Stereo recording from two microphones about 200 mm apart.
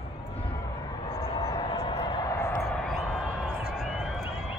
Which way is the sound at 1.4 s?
20° left (ahead or behind).